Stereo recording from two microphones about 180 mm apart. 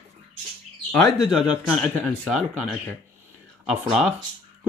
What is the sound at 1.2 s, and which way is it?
Speech, 5° right (ahead or behind).